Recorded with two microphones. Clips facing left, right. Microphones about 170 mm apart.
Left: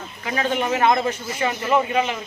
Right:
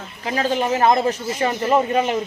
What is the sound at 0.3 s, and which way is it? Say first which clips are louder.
A man's voice: right 2 dB; 35° right (ahead or behind).